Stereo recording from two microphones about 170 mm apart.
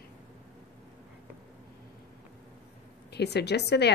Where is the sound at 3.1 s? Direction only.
75° left (ahead or behind).